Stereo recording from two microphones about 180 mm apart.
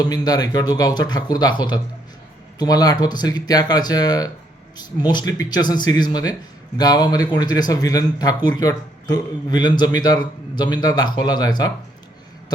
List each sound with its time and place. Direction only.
0.0 s a man's voice: 20° left (ahead or behind)